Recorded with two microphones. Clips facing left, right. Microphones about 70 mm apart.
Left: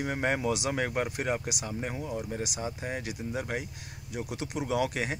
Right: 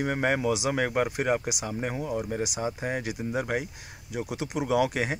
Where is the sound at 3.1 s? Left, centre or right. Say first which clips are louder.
Right 5 dB; centre.